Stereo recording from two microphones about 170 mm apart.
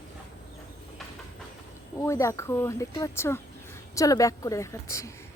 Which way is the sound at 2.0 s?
15° left (ahead or behind).